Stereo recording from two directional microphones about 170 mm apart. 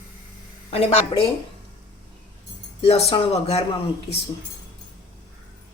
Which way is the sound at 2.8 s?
35° left (ahead or behind).